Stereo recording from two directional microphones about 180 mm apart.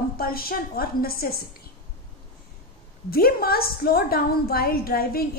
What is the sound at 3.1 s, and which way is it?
A woman's voice, 55° left (ahead or behind).